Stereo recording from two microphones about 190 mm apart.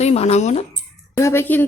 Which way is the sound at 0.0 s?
35° left (ahead or behind).